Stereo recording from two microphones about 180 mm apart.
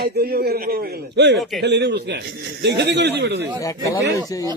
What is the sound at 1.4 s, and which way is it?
Speech, centre (ahead or behind).